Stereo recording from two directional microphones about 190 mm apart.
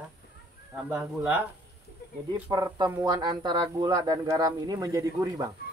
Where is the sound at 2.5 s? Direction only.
20° right (ahead or behind).